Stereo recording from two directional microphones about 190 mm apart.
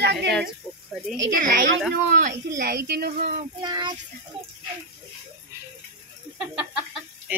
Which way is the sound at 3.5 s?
25° right (ahead or behind).